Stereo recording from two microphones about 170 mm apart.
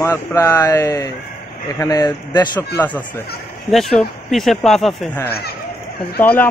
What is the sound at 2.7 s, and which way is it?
Speech, 10° left (ahead or behind).